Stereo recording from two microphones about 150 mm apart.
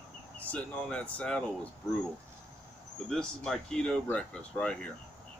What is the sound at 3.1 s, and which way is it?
Speech, 5° left (ahead or behind).